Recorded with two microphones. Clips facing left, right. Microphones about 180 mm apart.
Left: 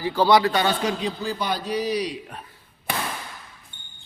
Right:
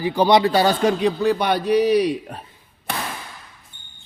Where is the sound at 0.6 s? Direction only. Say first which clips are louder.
Right 6 dB; 50° right (ahead or behind).